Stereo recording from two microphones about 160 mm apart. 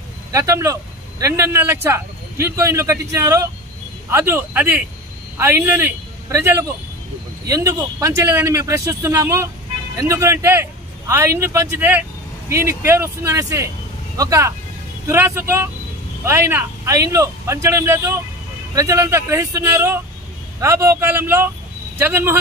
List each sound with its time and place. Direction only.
0.3 s a man's voice: 20° right (ahead or behind)